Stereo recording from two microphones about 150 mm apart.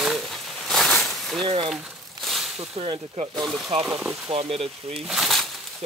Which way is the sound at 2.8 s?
40° right (ahead or behind).